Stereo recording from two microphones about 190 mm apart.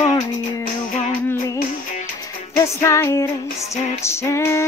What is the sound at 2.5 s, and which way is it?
Music, 15° left (ahead or behind).